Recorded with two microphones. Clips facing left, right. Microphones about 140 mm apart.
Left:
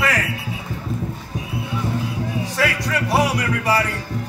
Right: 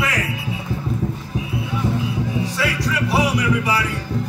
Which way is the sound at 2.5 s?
50° left (ahead or behind).